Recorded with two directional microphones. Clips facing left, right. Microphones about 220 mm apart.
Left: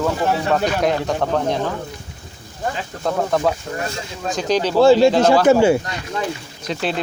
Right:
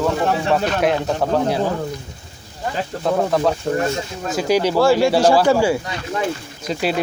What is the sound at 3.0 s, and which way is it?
Speech, centre (ahead or behind).